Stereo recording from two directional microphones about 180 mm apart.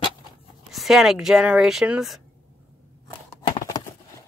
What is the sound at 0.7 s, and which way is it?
Speech, centre (ahead or behind).